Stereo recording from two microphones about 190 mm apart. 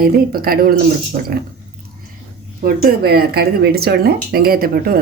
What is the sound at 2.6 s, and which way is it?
Speech, 50° right (ahead or behind).